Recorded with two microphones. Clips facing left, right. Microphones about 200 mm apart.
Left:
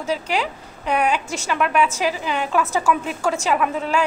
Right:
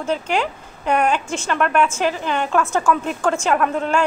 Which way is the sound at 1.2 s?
40° left (ahead or behind).